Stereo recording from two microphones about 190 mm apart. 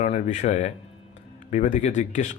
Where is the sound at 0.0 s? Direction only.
40° left (ahead or behind).